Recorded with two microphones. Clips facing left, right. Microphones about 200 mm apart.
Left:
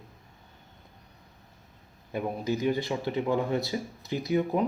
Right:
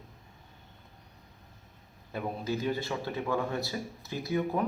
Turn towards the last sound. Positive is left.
turn(degrees=20)  # may be behind; listen again after turning